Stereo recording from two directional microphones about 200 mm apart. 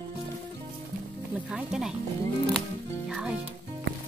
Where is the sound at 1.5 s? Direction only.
5° right (ahead or behind).